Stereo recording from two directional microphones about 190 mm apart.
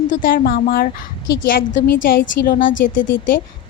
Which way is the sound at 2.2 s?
55° left (ahead or behind).